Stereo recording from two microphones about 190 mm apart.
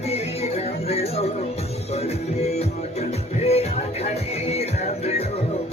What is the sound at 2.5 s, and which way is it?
Music, 35° left (ahead or behind).